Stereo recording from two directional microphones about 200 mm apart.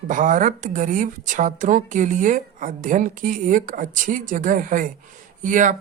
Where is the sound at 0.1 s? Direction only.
40° right (ahead or behind).